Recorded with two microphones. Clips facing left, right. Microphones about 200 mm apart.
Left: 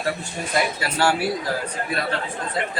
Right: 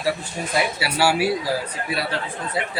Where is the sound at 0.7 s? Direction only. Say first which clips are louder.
Right 1 dB; 10° right (ahead or behind).